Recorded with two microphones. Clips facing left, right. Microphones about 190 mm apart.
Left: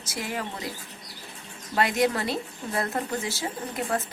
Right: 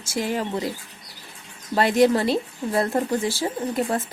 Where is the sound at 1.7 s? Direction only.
30° right (ahead or behind).